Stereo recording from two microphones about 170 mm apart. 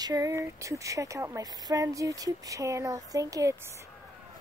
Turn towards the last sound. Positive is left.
turn(degrees=-20)  # may be behind; listen again after turning